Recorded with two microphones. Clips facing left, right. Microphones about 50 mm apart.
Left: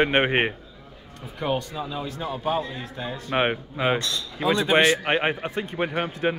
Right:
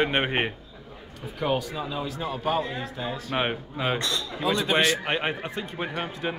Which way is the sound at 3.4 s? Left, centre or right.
Centre.